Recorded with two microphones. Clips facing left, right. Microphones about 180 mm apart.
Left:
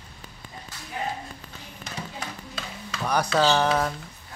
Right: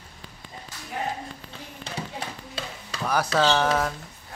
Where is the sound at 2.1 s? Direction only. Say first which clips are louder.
Right 2 dB; 30° right (ahead or behind).